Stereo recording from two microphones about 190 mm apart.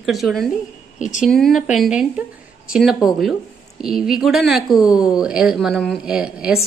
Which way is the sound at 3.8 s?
Centre (ahead or behind).